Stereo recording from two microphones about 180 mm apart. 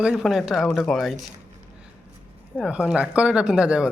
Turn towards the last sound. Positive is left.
turn(degrees=-5)  # may be behind; listen again after turning